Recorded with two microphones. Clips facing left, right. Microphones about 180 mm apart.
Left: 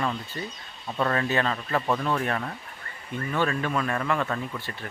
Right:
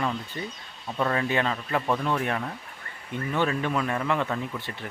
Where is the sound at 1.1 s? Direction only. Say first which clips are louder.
Even; 15° right (ahead or behind).